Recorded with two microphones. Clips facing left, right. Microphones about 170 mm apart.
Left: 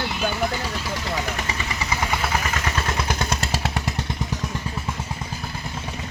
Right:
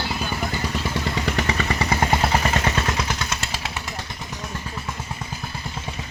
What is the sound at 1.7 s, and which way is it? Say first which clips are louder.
Vehicle: right 4 dB; 55° right (ahead or behind).